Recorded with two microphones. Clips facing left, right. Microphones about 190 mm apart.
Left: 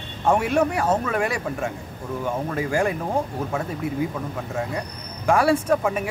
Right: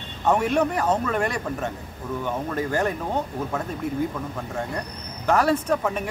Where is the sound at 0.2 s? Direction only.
10° left (ahead or behind).